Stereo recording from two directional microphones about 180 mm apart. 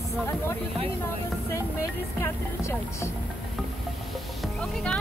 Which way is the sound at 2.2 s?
15° left (ahead or behind).